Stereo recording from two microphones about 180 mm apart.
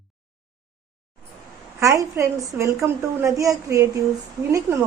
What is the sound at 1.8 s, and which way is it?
A woman's voice, 15° right (ahead or behind).